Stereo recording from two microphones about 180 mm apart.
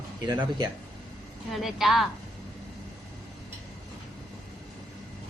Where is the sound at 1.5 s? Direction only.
Centre (ahead or behind).